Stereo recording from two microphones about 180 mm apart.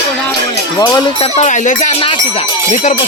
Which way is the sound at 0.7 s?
20° left (ahead or behind).